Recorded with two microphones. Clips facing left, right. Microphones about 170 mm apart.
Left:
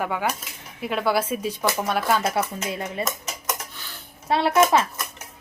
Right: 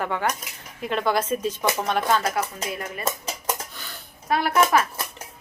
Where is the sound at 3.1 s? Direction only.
30° right (ahead or behind).